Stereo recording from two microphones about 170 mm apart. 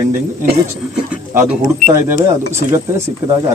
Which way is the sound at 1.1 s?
10° right (ahead or behind).